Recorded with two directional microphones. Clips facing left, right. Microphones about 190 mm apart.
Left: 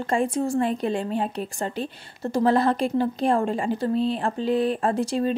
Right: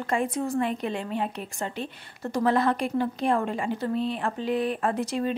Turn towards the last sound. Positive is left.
turn(degrees=30)  # may be behind; listen again after turning